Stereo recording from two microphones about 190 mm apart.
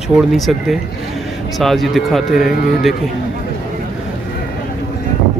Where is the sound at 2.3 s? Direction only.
50° left (ahead or behind).